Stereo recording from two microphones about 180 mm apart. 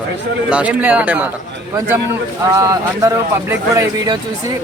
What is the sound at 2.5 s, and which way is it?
Speech, 20° right (ahead or behind).